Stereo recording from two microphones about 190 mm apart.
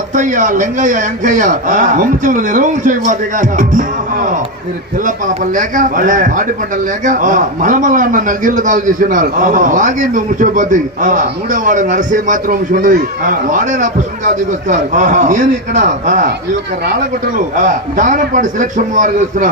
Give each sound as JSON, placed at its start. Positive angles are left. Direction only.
{"t": 0.1, "sound": "a man's voice", "side_deg": -40}
{"t": 17.6, "sound": "a man's voice", "side_deg": -40}